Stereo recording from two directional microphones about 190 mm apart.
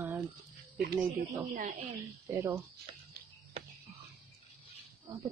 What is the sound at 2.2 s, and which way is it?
Speech, 10° right (ahead or behind).